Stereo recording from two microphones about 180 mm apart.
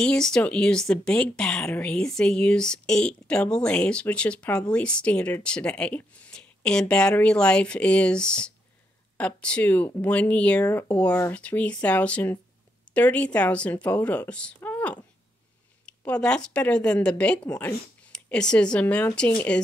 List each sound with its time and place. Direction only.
0.0 s speech: 5° left (ahead or behind)
16.1 s speech: 5° left (ahead or behind)